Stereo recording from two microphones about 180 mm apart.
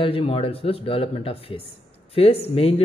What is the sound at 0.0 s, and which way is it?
Speech, 30° left (ahead or behind).